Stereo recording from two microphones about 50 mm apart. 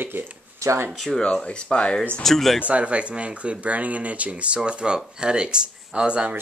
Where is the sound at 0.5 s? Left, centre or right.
Right.